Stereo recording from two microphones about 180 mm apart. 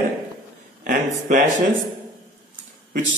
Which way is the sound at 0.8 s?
45° right (ahead or behind).